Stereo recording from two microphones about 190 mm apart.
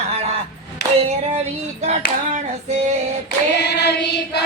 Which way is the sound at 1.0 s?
35° right (ahead or behind).